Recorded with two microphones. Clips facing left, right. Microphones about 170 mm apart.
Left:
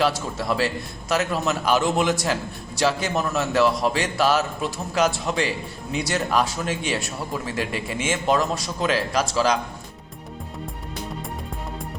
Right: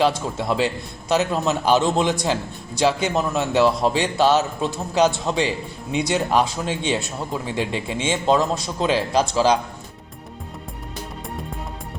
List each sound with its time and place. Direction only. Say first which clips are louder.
0.3 s speech: right 2 dB; 20° right (ahead or behind)